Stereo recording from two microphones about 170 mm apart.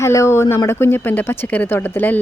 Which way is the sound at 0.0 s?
15° left (ahead or behind).